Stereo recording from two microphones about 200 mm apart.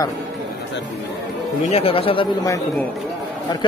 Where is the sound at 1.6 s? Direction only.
30° left (ahead or behind).